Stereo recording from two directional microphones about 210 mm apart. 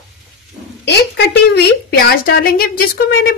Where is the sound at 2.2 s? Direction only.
45° left (ahead or behind).